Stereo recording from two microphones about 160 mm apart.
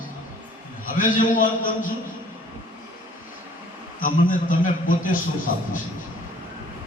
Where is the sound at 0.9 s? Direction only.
55° left (ahead or behind).